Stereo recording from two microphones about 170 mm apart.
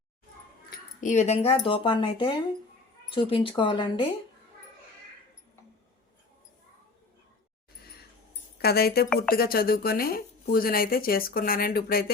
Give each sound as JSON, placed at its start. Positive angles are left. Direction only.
{"t": 0.7, "sound": "speech", "side_deg": 45}
{"t": 8.5, "sound": "speech", "side_deg": 70}